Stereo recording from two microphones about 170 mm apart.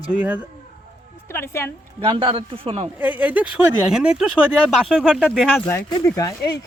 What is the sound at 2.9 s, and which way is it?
Speech, 10° right (ahead or behind).